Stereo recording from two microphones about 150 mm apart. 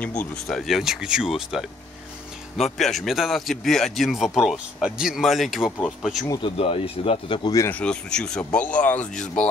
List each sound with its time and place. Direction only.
0.0 s speech: 10° left (ahead or behind)
6.2 s speech: 25° left (ahead or behind)
6.6 s speech: 40° left (ahead or behind)
7.5 s speech: 20° left (ahead or behind)
7.8 s speech: 5° left (ahead or behind)